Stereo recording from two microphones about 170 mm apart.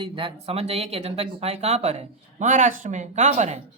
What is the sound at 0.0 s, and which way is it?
Speech, 30° right (ahead or behind).